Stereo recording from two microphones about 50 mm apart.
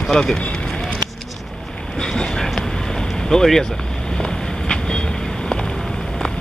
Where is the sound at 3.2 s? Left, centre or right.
Centre.